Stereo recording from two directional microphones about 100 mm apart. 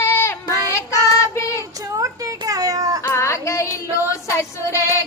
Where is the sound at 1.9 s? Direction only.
35° right (ahead or behind).